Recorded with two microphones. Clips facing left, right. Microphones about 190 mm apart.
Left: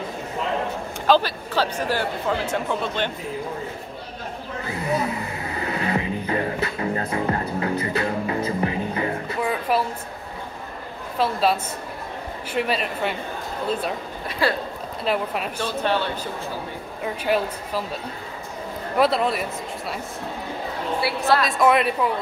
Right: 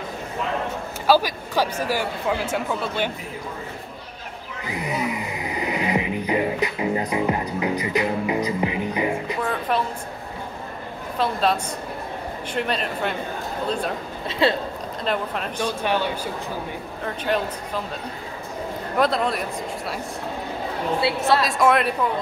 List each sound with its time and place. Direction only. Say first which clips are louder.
1.0 s speech: even; 10° right (ahead or behind)
4.6 s music: left 1 dB; 15° right (ahead or behind)
9.4 s music: left 3 dB; 5° left (ahead or behind)
11.1 s a woman's voice: left 1 dB; 5° left (ahead or behind)
14.4 s speech: right 3 dB; 20° right (ahead or behind)
15.0 s speech: left 2 dB; 5° left (ahead or behind)
15.6 s speech: right 1 dB; 10° right (ahead or behind)
17.0 s speech: left 2 dB; 5° left (ahead or behind)
18.9 s a woman's voice: left 1 dB; 5° left (ahead or behind)
21.2 s a woman's voice: left 2 dB; centre (ahead or behind)